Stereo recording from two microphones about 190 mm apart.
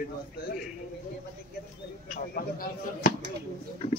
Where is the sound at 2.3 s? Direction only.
50° left (ahead or behind).